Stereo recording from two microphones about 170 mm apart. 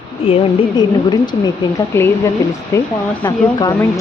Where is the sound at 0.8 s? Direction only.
25° left (ahead or behind).